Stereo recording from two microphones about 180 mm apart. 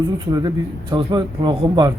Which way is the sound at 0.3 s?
20° right (ahead or behind).